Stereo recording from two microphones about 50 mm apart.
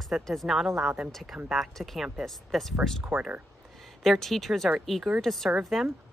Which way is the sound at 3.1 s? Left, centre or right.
Right.